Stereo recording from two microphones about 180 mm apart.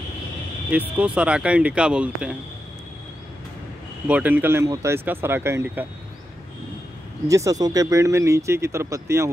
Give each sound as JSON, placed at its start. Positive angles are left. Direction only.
{"t": 0.7, "sound": "speech", "side_deg": -10}
{"t": 4.1, "sound": "speech", "side_deg": -10}
{"t": 7.2, "sound": "speech", "side_deg": -20}